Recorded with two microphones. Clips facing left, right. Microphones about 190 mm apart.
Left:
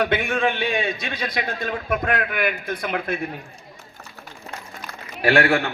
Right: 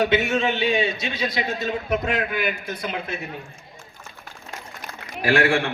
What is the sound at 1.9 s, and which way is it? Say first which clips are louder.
A man's voice: left 1 dB; 55° left (ahead or behind).